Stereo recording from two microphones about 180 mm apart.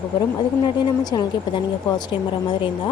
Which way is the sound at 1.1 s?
20° left (ahead or behind).